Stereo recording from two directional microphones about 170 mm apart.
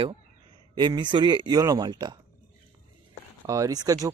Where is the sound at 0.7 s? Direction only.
25° right (ahead or behind).